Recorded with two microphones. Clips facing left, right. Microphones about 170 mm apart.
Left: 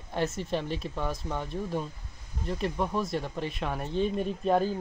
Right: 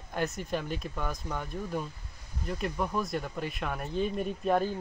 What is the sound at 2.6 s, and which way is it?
Speech, 25° left (ahead or behind).